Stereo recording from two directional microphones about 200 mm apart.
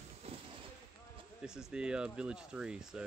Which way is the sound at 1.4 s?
5° right (ahead or behind).